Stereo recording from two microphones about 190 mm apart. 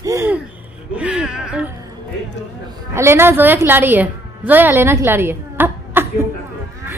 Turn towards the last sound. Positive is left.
turn(degrees=-10)  # may be behind; listen again after turning